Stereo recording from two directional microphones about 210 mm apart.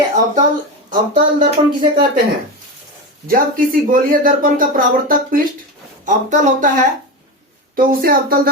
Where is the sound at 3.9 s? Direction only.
40° right (ahead or behind).